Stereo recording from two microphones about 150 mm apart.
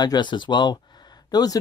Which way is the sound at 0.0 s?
30° left (ahead or behind).